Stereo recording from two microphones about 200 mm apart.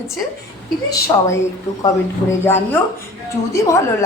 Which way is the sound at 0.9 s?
15° left (ahead or behind).